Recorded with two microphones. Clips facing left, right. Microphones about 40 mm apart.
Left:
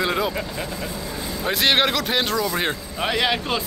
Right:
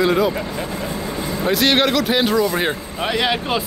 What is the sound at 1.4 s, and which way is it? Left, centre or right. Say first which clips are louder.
A man's voice: right 3 dB; centre.